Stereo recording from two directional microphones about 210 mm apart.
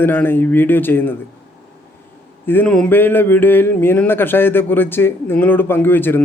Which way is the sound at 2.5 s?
5° left (ahead or behind).